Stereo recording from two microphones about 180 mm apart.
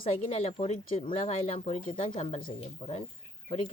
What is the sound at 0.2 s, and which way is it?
Speech, 40° left (ahead or behind).